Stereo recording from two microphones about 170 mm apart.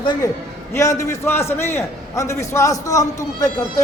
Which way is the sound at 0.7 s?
20° left (ahead or behind).